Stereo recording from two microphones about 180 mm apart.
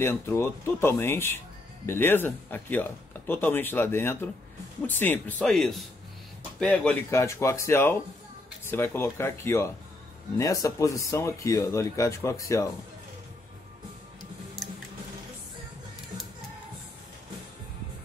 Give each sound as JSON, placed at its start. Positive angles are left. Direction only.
{"t": 0.0, "sound": "a man's voice", "side_deg": 15}